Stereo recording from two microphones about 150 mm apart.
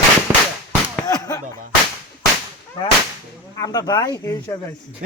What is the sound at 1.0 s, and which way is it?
Speech, 25° left (ahead or behind).